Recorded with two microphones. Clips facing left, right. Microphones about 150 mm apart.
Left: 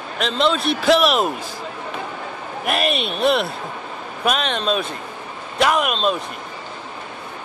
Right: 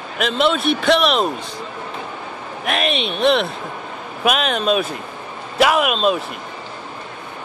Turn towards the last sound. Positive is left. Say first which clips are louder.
# right 3 dB
turn(degrees=-5)  # may be behind; listen again after turning